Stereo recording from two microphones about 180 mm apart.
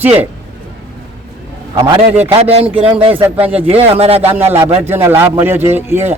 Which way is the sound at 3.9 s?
35° right (ahead or behind).